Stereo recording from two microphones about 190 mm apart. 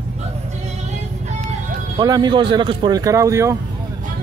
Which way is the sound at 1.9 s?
20° right (ahead or behind).